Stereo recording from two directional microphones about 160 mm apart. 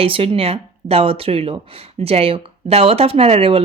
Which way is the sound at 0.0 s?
35° right (ahead or behind).